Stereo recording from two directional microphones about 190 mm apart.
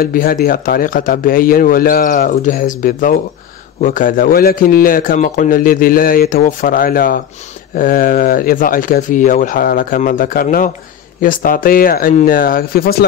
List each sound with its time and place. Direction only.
0.0 s speech: 50° left (ahead or behind)